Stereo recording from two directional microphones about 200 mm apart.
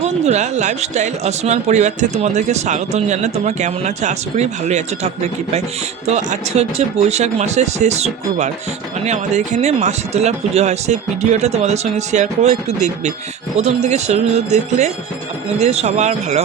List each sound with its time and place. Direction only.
0.0 s speech: 35° right (ahead or behind)